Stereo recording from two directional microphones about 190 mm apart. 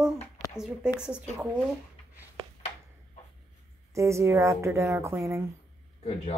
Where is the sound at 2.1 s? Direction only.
15° right (ahead or behind).